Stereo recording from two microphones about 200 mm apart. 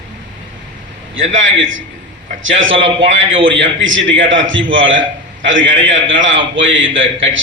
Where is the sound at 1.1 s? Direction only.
75° right (ahead or behind).